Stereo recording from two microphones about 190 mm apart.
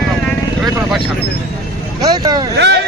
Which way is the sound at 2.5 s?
65° right (ahead or behind).